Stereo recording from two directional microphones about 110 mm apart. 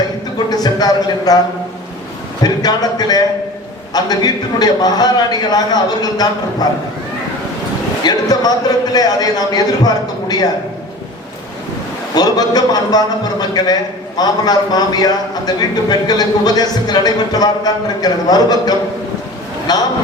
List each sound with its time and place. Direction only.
0.3 s a sound: 35° left (ahead or behind)
2.4 s a man's voice: 40° left (ahead or behind)
8.0 s a man's voice: 35° left (ahead or behind)
12.1 s a man's voice: 35° left (ahead or behind)
19.7 s a man's voice: 40° left (ahead or behind)